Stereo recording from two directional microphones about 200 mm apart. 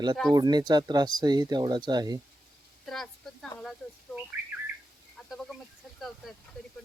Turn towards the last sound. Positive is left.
turn(degrees=0)  # may be behind; listen again after turning